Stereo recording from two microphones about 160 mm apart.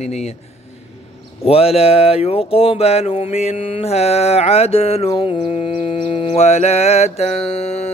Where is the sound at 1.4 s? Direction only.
40° left (ahead or behind).